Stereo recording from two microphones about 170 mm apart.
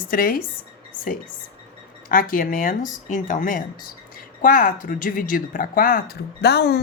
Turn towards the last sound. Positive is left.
turn(degrees=75)  # may be behind; listen again after turning